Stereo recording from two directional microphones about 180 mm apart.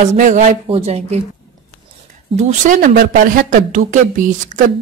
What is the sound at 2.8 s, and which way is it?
A woman's voice, 50° right (ahead or behind).